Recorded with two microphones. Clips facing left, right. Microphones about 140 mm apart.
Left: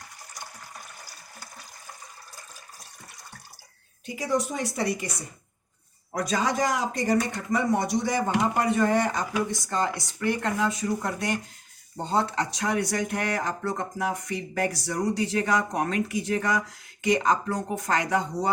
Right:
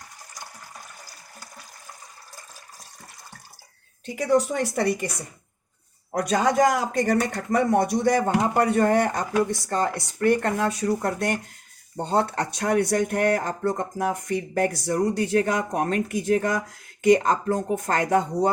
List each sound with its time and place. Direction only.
4.1 s speech: 60° right (ahead or behind)
6.1 s speech: 55° right (ahead or behind)